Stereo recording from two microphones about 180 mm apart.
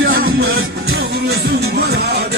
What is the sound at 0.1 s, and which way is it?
Music, 55° right (ahead or behind).